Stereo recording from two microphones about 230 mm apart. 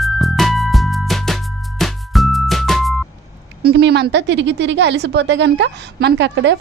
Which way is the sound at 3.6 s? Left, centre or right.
Right.